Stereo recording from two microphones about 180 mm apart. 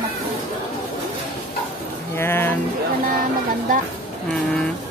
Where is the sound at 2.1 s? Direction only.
15° left (ahead or behind).